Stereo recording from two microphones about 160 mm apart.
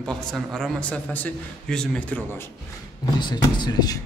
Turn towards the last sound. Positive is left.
turn(degrees=25)  # may be behind; listen again after turning